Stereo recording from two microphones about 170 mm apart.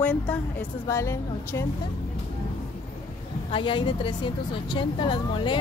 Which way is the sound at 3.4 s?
30° left (ahead or behind).